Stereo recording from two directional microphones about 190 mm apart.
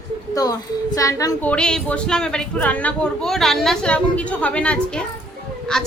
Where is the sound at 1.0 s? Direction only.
15° left (ahead or behind).